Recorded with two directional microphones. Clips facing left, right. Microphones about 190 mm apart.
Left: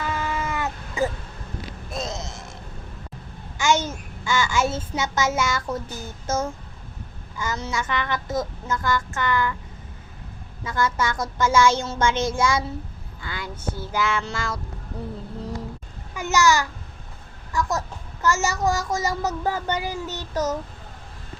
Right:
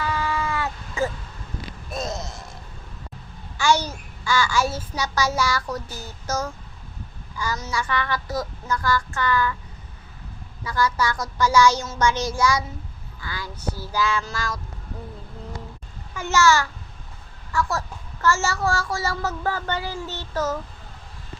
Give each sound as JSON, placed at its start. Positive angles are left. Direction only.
{"t": 0.0, "sound": "a sound", "side_deg": 20}
{"t": 3.6, "sound": "a child's voice", "side_deg": 20}
{"t": 10.6, "sound": "a child's voice", "side_deg": 25}
{"t": 16.3, "sound": "a child's voice", "side_deg": 15}